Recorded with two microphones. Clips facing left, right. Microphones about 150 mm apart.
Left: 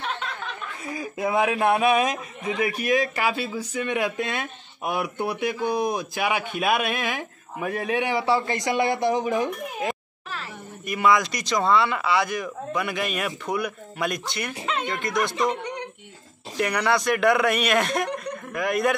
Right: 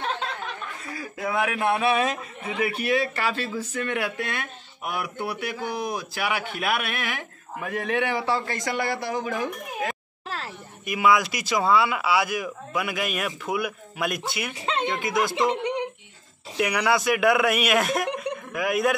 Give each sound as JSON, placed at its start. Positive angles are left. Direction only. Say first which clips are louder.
{"t": 0.9, "sound": "a man's voice", "louder": "left 3 dB", "side_deg": 20}
{"t": 10.9, "sound": "speech", "louder": "even", "side_deg": -5}
{"t": 16.5, "sound": "speech", "louder": "even", "side_deg": -5}